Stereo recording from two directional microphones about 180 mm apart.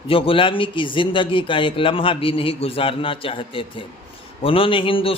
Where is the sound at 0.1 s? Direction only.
30° left (ahead or behind).